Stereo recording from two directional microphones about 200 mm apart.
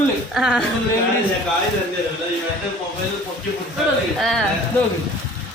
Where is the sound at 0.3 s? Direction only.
Centre (ahead or behind).